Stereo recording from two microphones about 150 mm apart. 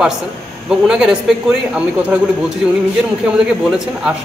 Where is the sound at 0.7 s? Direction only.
5° right (ahead or behind).